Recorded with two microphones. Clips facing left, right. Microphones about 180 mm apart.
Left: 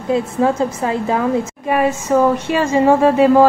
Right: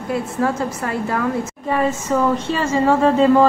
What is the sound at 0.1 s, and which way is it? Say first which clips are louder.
A woman's voice: left 5 dB; 20° left (ahead or behind).